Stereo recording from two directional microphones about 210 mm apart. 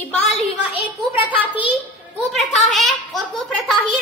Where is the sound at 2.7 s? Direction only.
Centre (ahead or behind).